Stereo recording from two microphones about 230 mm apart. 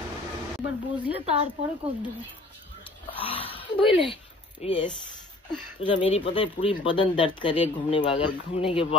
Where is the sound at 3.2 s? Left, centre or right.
Left.